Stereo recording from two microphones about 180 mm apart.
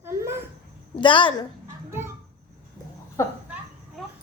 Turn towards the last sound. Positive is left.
turn(degrees=15)  # may be behind; listen again after turning